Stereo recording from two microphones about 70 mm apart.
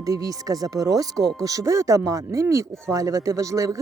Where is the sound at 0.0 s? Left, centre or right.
Right.